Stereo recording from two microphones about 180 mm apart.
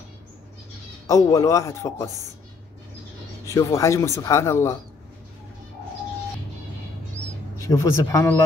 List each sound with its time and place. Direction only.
1.0 s speech: 20° left (ahead or behind)
3.4 s speech: 15° left (ahead or behind)
7.6 s speech: 15° left (ahead or behind)